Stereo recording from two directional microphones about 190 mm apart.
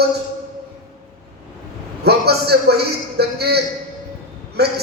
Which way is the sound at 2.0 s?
60° right (ahead or behind).